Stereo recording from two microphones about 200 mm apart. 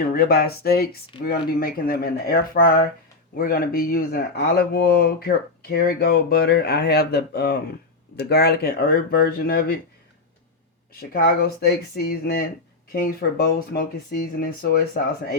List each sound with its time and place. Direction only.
0.1 s speech: 50° left (ahead or behind)
11.1 s speech: 50° left (ahead or behind)